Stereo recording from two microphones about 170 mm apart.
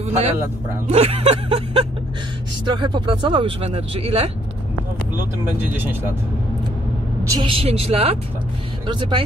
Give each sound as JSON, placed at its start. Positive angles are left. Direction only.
{"t": 0.0, "sound": "speech", "side_deg": -35}
{"t": 5.1, "sound": "speech", "side_deg": -10}
{"t": 7.2, "sound": "speech", "side_deg": -20}
{"t": 7.5, "sound": "speech", "side_deg": -35}